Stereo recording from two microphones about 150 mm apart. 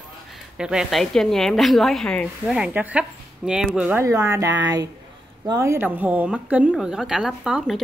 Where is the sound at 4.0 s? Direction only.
20° right (ahead or behind).